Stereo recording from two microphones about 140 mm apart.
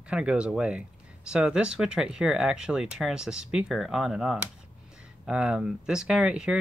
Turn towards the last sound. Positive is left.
turn(degrees=-5)  # may be behind; listen again after turning